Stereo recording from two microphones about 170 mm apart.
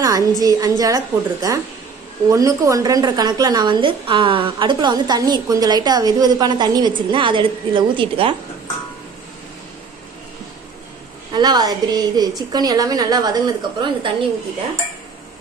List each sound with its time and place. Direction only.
0.0 s music: 20° right (ahead or behind)
0.4 s a woman's voice: 20° right (ahead or behind)
11.3 s a woman's voice: 25° right (ahead or behind)